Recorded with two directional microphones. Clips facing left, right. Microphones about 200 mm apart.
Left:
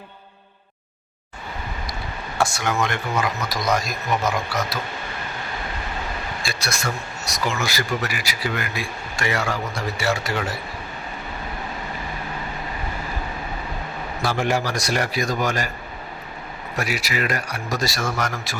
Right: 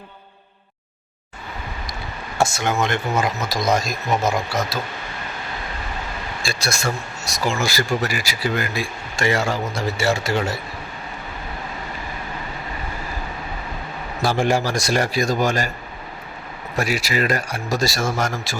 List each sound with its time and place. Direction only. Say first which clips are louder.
2.4 s speech: right 2 dB; 25° right (ahead or behind)
6.4 s speech: right 5 dB; 30° right (ahead or behind)
14.3 s speech: right 3 dB; 30° right (ahead or behind)
16.7 s speech: right 4 dB; 30° right (ahead or behind)